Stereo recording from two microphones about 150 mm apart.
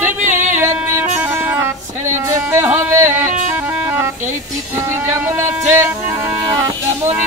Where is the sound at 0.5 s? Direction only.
15° right (ahead or behind).